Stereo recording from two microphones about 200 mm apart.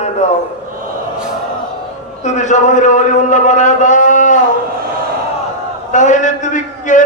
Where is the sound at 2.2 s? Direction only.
35° left (ahead or behind).